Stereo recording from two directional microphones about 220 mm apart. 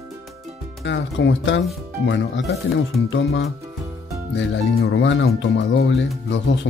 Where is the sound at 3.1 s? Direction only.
55° left (ahead or behind).